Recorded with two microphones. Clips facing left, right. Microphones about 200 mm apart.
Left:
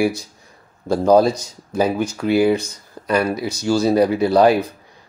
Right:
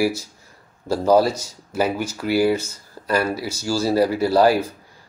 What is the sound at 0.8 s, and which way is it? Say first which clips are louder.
Speech: left 3 dB; 10° right (ahead or behind).